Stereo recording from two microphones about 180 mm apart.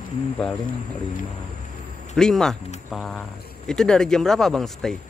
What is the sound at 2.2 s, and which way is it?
Speech, 5° left (ahead or behind).